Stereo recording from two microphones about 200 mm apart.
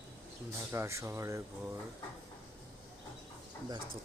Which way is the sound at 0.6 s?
10° right (ahead or behind).